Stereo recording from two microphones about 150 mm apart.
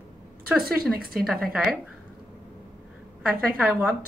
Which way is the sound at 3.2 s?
10° right (ahead or behind).